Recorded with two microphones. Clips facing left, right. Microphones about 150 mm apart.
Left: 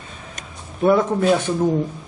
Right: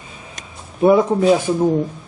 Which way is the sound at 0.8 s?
15° right (ahead or behind).